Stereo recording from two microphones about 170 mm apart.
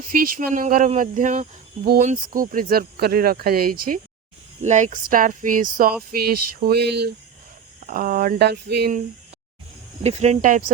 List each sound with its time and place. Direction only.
0.1 s speech: 55° right (ahead or behind)
4.6 s speech: 45° right (ahead or behind); by 7.1 s 80° right
7.9 s speech: 55° right (ahead or behind); by 8.9 s 75° right (ahead or behind)
10.0 s speech: 40° right (ahead or behind)